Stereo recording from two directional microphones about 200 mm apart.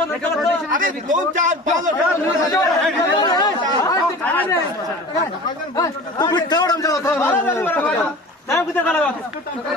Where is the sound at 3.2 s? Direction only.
20° left (ahead or behind).